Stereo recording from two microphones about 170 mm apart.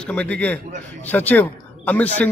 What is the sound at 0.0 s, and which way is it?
A man's voice, 5° left (ahead or behind).